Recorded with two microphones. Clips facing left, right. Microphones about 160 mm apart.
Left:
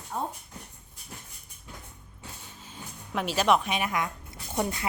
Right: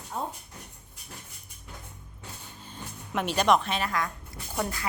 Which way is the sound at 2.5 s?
Centre (ahead or behind).